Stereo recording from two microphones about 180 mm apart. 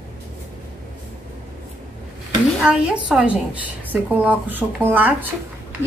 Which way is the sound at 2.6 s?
5° right (ahead or behind).